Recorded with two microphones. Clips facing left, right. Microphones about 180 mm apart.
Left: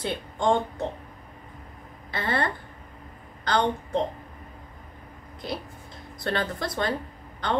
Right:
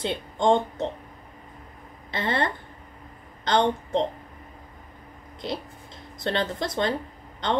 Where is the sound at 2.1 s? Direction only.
25° right (ahead or behind).